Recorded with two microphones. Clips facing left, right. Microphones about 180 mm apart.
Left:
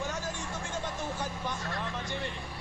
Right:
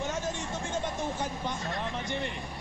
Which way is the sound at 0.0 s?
20° right (ahead or behind).